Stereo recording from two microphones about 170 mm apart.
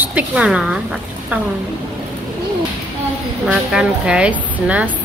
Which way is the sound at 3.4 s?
5° right (ahead or behind).